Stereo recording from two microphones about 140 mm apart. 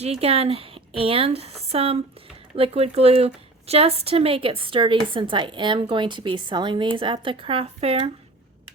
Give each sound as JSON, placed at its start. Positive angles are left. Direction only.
{"t": 0.0, "sound": "a woman's voice", "side_deg": -45}